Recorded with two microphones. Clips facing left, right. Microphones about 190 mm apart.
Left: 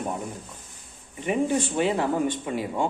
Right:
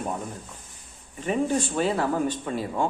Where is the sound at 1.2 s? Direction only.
15° left (ahead or behind).